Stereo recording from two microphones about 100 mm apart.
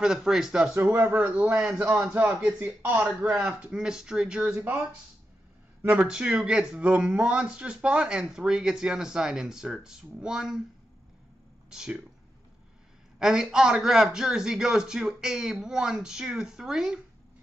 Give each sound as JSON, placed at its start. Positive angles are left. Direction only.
{"t": 0.0, "sound": "a man's voice", "side_deg": -5}
{"t": 2.2, "sound": "speech", "side_deg": -10}
{"t": 5.8, "sound": "speech", "side_deg": -15}
{"t": 11.7, "sound": "speech", "side_deg": -5}
{"t": 13.2, "sound": "a man's voice", "side_deg": -5}